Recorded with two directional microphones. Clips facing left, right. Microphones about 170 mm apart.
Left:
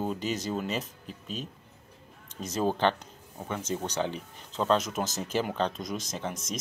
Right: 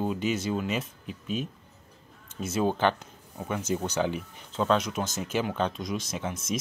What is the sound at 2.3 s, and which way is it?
Speech, 5° right (ahead or behind).